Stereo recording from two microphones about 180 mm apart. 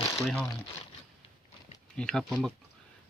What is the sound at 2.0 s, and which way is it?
Speech, 5° left (ahead or behind).